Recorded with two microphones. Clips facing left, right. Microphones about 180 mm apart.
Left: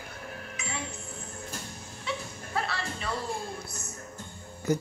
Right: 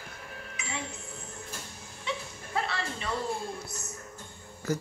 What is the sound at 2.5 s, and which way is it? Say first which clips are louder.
Music: even; 20° right (ahead or behind).